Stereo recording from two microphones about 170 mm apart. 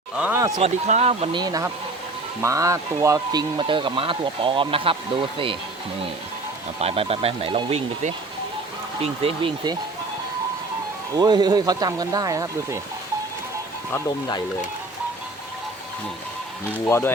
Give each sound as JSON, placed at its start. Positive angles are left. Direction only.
{"t": 0.2, "sound": "speech", "side_deg": -15}
{"t": 0.6, "sound": "speech", "side_deg": -40}
{"t": 1.4, "sound": "speech", "side_deg": -20}
{"t": 3.6, "sound": "speech", "side_deg": -30}
{"t": 6.7, "sound": "speech", "side_deg": -35}
{"t": 9.2, "sound": "speech", "side_deg": -30}
{"t": 11.2, "sound": "speech", "side_deg": -25}
{"t": 16.8, "sound": "speech", "side_deg": 15}